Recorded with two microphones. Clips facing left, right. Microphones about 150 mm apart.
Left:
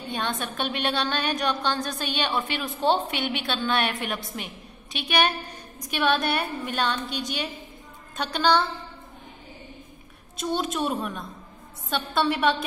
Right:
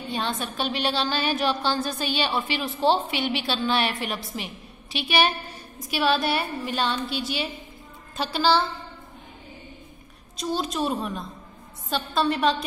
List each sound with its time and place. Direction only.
0.1 s a woman's voice: centre (ahead or behind)
10.3 s a woman's voice: centre (ahead or behind)